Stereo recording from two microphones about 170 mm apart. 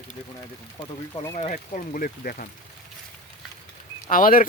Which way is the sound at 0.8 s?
25° left (ahead or behind).